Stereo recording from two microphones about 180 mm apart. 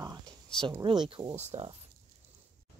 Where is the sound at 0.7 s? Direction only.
25° right (ahead or behind).